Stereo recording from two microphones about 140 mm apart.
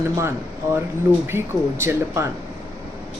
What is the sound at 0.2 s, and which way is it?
Speech, 20° right (ahead or behind).